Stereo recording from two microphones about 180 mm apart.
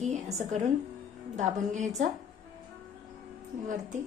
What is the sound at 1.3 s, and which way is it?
Speech, 45° right (ahead or behind).